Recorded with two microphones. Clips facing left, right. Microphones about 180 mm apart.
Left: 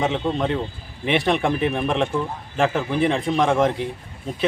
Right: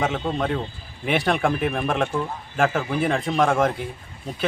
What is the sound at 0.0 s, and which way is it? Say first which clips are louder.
Speech: left 2 dB; centre (ahead or behind).